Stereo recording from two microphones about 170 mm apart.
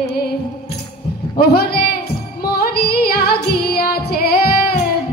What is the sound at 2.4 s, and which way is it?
Music, 65° left (ahead or behind).